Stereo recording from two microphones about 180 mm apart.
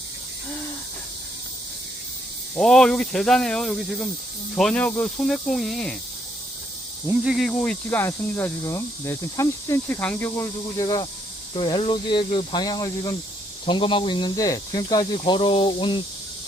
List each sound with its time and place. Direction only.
2.6 s speech: centre (ahead or behind)
7.1 s speech: 5° right (ahead or behind); by 16.0 s 25° left (ahead or behind)